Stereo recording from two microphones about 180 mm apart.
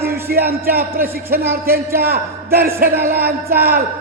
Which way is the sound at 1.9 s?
60° right (ahead or behind).